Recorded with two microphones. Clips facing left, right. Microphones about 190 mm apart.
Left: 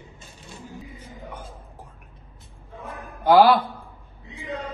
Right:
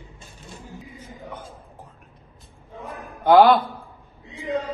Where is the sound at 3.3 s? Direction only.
5° left (ahead or behind).